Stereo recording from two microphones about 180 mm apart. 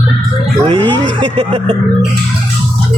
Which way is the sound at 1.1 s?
25° right (ahead or behind).